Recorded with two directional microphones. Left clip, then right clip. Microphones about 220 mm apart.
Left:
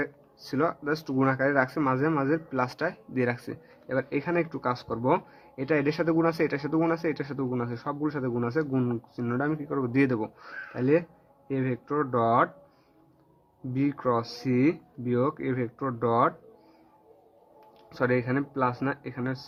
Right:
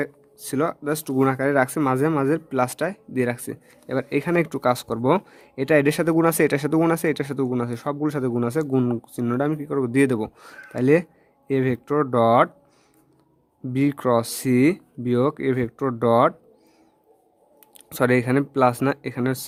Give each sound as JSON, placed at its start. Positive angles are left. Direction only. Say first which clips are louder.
{"t": 0.5, "sound": "speech", "louder": "right 3 dB", "side_deg": -50}
{"t": 13.7, "sound": "speech", "louder": "right 6 dB", "side_deg": -55}
{"t": 17.8, "sound": "speech", "louder": "right 6 dB", "side_deg": -55}